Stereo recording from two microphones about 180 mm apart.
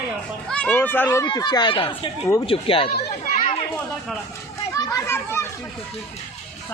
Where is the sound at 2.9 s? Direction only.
60° left (ahead or behind).